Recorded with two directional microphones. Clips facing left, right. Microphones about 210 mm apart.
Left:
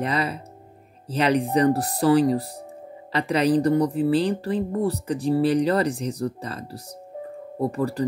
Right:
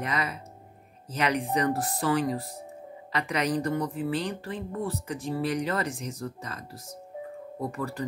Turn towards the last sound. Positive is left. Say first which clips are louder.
# left 8 dB
turn(degrees=35)  # may be behind; listen again after turning